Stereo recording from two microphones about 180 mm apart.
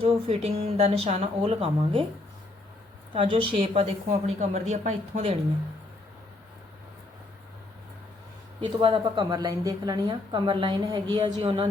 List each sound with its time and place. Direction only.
0.0 s speech: 35° right (ahead or behind)
3.1 s a woman's voice: 30° right (ahead or behind)
8.6 s a woman's voice: 25° right (ahead or behind)